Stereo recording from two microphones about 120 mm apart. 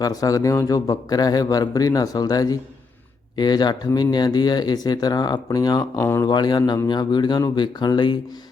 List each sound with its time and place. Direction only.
0.0 s speech: 30° left (ahead or behind)
6.0 s speech: 20° left (ahead or behind)
6.2 s speech: 35° left (ahead or behind)